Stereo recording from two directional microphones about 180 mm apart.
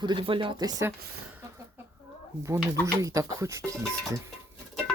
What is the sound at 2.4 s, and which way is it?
Speech, 15° right (ahead or behind).